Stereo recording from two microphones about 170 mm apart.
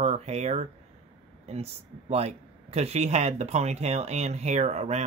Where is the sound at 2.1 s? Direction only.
40° right (ahead or behind).